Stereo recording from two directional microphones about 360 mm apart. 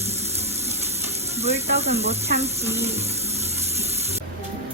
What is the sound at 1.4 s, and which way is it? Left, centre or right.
Speech, centre.